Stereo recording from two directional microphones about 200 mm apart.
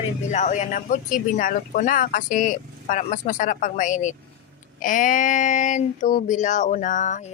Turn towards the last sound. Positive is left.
turn(degrees=40)  # may be behind; listen again after turning